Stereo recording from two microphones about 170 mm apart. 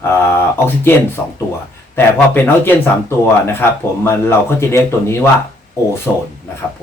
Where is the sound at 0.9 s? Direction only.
10° left (ahead or behind).